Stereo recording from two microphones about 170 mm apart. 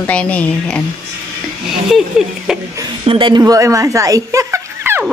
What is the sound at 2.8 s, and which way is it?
Speech, 30° right (ahead or behind).